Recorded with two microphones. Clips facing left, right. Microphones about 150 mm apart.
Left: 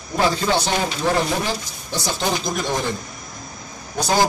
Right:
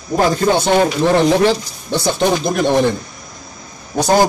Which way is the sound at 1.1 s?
80° right.